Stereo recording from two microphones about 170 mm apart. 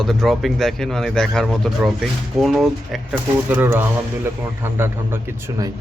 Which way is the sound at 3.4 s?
10° right (ahead or behind).